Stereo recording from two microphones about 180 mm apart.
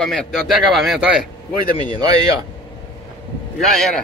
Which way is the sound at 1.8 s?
25° right (ahead or behind).